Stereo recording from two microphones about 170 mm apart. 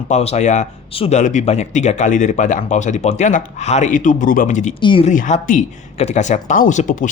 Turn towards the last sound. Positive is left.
turn(degrees=45)  # may be behind; listen again after turning